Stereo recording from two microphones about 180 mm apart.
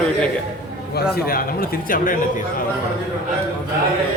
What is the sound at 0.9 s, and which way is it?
Speech, 55° left (ahead or behind).